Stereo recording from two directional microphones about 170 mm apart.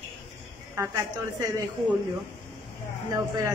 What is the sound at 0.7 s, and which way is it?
Speech, 15° right (ahead or behind).